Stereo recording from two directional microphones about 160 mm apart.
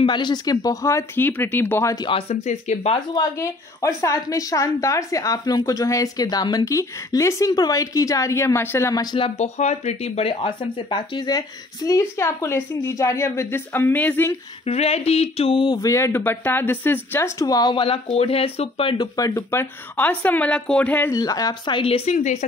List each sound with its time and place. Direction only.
0.0 s a woman's voice: 30° left (ahead or behind)
2.0 s speech: 35° left (ahead or behind)
3.2 s a woman's voice: 20° left (ahead or behind)
9.4 s a woman's voice: 45° left (ahead or behind); by 14.3 s 10° left (ahead or behind)
14.7 s a woman's voice: 40° left (ahead or behind)
19.1 s speech: 20° left (ahead or behind)
21.1 s a woman's voice: 20° left (ahead or behind)
22.1 s speech: 50° left (ahead or behind)